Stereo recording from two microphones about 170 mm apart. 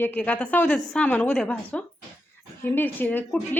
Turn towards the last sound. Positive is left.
turn(degrees=10)  # may be behind; listen again after turning